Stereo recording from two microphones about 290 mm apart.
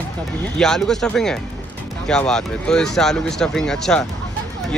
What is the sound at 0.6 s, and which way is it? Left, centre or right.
Speech, centre.